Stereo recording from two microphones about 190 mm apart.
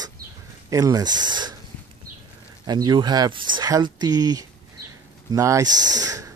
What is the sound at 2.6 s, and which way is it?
Speech, 20° right (ahead or behind).